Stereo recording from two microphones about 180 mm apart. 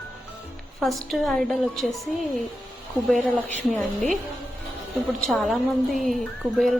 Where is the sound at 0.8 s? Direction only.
Centre (ahead or behind).